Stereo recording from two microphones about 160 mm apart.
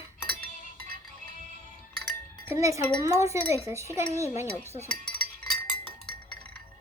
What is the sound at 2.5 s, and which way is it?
Dishes, 20° right (ahead or behind).